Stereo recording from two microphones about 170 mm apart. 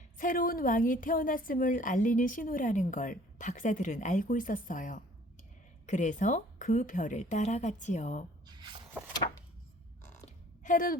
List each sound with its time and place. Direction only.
0.2 s a woman's voice: 55° left (ahead or behind)
8.4 s squish: 25° right (ahead or behind)
10.1 s a sound: 50° left (ahead or behind)